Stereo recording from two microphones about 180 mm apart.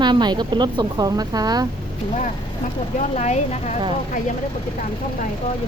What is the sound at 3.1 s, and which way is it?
Speech, 40° left (ahead or behind).